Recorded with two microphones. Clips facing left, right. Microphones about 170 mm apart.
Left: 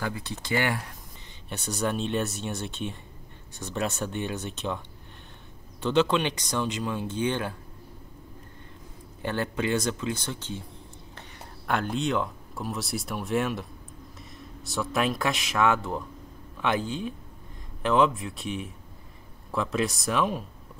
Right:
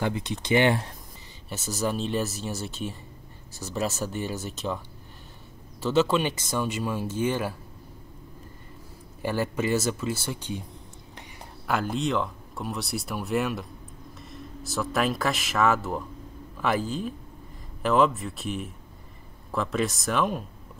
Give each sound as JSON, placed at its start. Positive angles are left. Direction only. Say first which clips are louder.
{"t": 0.0, "sound": "speech", "louder": "right 4 dB", "side_deg": -20}
{"t": 1.5, "sound": "speech", "louder": "even", "side_deg": 0}
{"t": 9.2, "sound": "speech", "louder": "right 2 dB", "side_deg": -5}
{"t": 11.6, "sound": "speech", "louder": "right 1 dB", "side_deg": 0}